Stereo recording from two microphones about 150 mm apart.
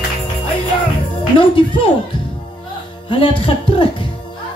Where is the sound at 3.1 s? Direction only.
35° left (ahead or behind).